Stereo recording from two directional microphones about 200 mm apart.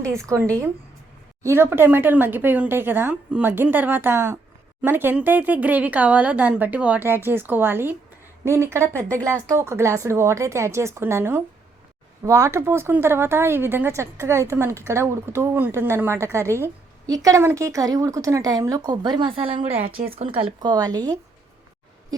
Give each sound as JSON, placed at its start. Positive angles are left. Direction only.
{"t": 1.4, "sound": "speech", "side_deg": -15}